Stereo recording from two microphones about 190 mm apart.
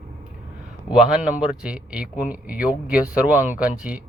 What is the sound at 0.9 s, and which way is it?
Speech, 5° right (ahead or behind).